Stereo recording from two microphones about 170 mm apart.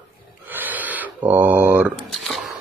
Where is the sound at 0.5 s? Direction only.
10° right (ahead or behind).